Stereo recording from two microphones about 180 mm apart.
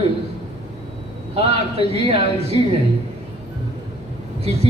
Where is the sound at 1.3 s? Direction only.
35° right (ahead or behind).